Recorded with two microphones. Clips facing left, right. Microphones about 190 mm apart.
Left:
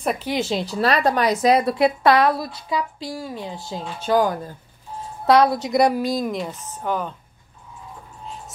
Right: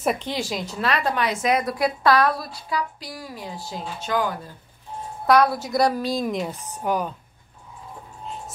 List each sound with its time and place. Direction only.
0.0 s a woman's voice: centre (ahead or behind)
0.3 s a woman's voice: 25° left (ahead or behind)
4.0 s speech: 40° left (ahead or behind)
5.2 s a woman's voice: 20° left (ahead or behind)
6.3 s speech: 10° right (ahead or behind)